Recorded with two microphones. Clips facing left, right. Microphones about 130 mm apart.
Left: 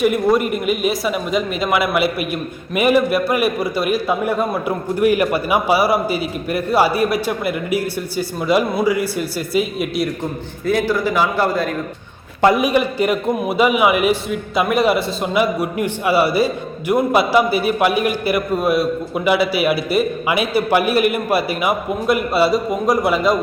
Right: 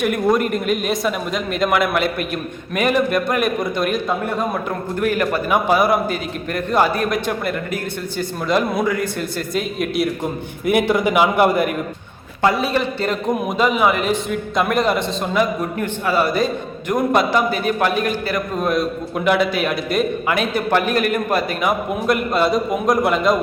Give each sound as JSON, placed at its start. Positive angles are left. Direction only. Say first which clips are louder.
{"t": 0.0, "sound": "a man's voice", "louder": "left 2 dB", "side_deg": 0}
{"t": 10.7, "sound": "a man's voice", "louder": "right 1 dB", "side_deg": -20}
{"t": 12.4, "sound": "a man's voice", "louder": "left 3 dB", "side_deg": 20}